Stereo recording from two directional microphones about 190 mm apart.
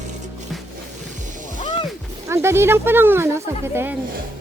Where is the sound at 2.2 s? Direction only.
15° right (ahead or behind).